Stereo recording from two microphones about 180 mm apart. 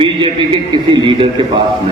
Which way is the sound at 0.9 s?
30° right (ahead or behind).